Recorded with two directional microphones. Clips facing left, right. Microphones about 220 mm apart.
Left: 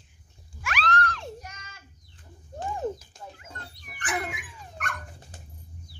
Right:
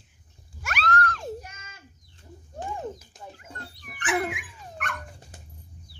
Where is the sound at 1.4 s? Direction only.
25° right (ahead or behind).